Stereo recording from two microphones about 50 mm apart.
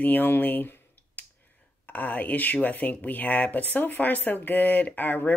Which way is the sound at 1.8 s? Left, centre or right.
Left.